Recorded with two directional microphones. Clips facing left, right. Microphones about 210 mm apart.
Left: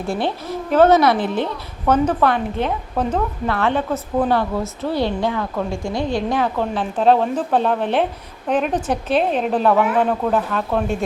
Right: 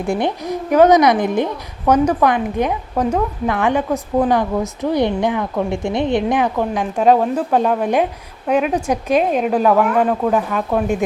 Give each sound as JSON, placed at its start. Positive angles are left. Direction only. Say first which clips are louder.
{"t": 0.0, "sound": "a woman's voice", "louder": "right 3 dB", "side_deg": -15}